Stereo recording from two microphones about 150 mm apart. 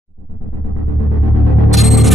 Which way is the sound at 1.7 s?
Centre (ahead or behind).